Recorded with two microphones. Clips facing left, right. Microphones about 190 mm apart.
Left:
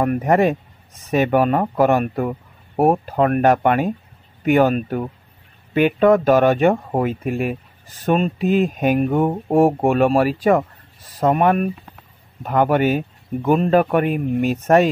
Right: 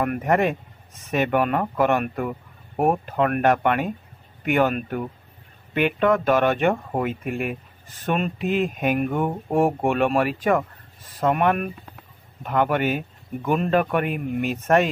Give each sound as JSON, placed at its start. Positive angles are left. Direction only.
{"t": 0.0, "sound": "speech", "side_deg": 35}